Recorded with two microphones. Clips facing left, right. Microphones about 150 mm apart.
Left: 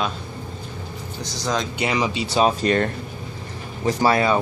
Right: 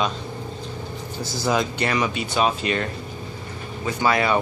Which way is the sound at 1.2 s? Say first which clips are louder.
Right 3 dB; 5° right (ahead or behind).